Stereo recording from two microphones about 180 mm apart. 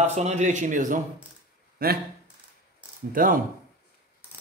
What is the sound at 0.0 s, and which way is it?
A man's voice, 40° right (ahead or behind).